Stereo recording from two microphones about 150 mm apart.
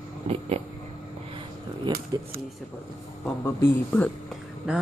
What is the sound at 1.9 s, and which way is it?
Speech, 30° right (ahead or behind).